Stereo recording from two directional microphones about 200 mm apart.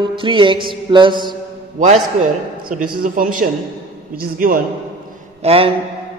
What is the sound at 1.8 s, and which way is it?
A man's voice, 35° right (ahead or behind).